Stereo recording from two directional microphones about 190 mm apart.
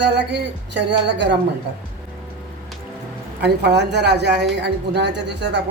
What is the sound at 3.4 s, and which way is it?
Speech, 60° right (ahead or behind).